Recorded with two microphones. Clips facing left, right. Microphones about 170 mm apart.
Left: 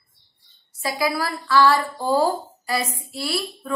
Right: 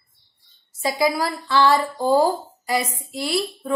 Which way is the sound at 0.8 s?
20° right (ahead or behind).